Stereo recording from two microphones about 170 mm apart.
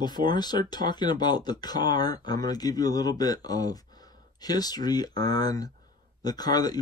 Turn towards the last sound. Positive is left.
turn(degrees=25)  # may be behind; listen again after turning